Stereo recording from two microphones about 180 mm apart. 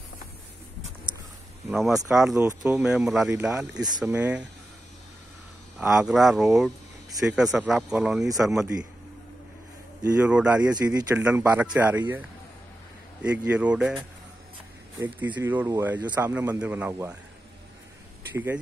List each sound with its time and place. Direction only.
1.7 s a man's voice: centre (ahead or behind)
5.8 s speech: 5° right (ahead or behind)
10.2 s speech: 5° right (ahead or behind)
10.7 s speech: 20° right (ahead or behind)
11.1 s a man's voice: 10° right (ahead or behind)
13.2 s a man's voice: 5° right (ahead or behind)
18.3 s speech: 10° right (ahead or behind)